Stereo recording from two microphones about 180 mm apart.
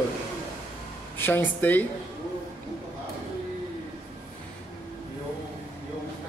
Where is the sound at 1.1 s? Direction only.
10° left (ahead or behind).